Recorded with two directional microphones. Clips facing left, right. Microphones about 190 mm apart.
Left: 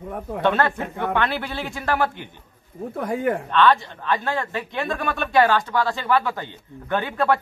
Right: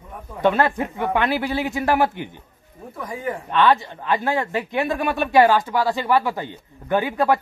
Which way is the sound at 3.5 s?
20° right (ahead or behind).